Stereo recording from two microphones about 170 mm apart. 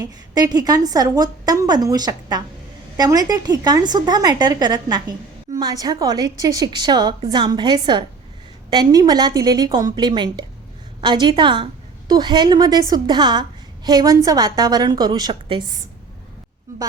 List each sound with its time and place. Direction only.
0.0 s a woman's voice: 20° right (ahead or behind)